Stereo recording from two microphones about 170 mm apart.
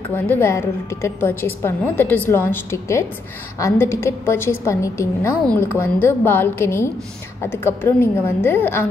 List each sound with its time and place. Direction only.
0.1 s a woman's voice: 15° left (ahead or behind)